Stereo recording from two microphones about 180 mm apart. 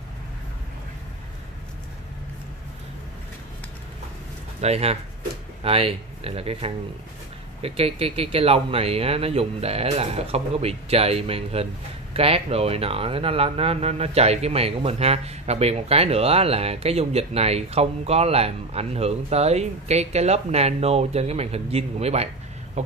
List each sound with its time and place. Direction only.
4.6 s speech: 35° right (ahead or behind)